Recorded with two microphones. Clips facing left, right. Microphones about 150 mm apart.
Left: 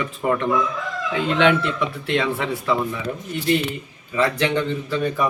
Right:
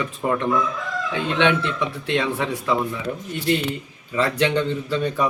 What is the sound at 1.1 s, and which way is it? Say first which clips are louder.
Speech: left 2 dB; 25° right (ahead or behind).